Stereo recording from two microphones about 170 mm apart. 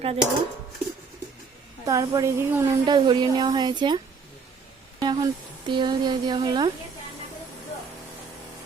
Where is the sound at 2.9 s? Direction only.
25° right (ahead or behind).